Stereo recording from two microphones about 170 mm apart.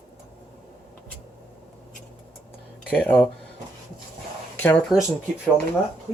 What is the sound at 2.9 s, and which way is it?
Speech, 5° left (ahead or behind).